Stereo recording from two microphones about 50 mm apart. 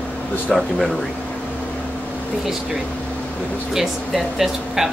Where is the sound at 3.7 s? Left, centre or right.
Centre.